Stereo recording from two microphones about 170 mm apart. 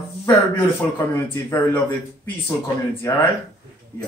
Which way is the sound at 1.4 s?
15° left (ahead or behind).